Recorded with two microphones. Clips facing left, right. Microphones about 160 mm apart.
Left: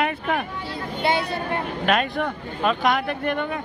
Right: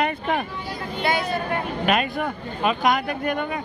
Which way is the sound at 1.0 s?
30° left (ahead or behind).